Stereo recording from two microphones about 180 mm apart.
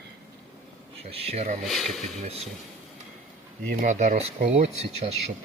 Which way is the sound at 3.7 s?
40° right (ahead or behind).